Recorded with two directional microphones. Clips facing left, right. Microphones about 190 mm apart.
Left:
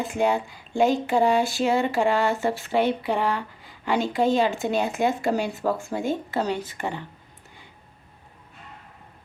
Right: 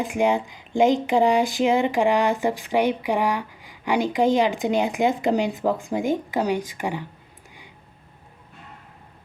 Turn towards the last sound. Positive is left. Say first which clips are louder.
# right 2 dB
turn(degrees=-15)  # may be behind; listen again after turning